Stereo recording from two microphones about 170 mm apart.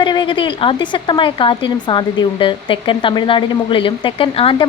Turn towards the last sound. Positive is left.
turn(degrees=30)  # may be behind; listen again after turning